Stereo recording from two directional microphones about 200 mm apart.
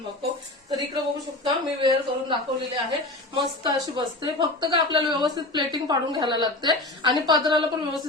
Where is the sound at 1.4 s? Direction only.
25° right (ahead or behind).